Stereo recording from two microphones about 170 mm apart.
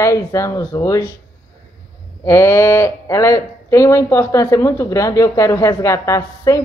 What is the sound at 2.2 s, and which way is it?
Speech, 15° left (ahead or behind).